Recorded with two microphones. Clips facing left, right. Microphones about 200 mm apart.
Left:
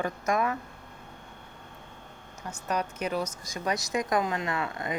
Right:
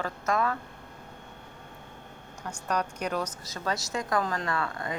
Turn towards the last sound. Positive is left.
turn(degrees=20)  # may be behind; listen again after turning